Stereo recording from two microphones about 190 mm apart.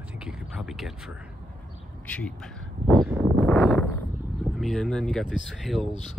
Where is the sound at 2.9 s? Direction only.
5° right (ahead or behind).